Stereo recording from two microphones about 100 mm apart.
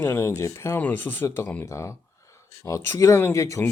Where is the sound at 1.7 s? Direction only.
30° left (ahead or behind).